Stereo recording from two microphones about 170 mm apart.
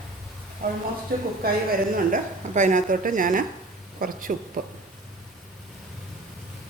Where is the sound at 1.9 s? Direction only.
50° right (ahead or behind).